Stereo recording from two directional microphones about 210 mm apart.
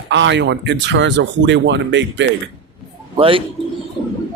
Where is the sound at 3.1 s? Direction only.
25° right (ahead or behind).